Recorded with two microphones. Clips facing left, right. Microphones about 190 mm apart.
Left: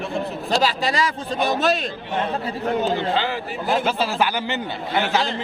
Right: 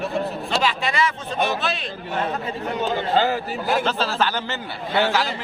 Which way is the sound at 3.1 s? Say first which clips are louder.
Right 4 dB; 45° right (ahead or behind).